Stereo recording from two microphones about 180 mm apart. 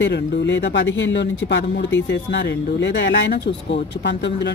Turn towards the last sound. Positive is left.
turn(degrees=75)  # may be behind; listen again after turning